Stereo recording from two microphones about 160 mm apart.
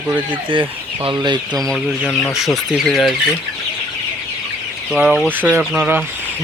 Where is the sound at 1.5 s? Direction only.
Centre (ahead or behind).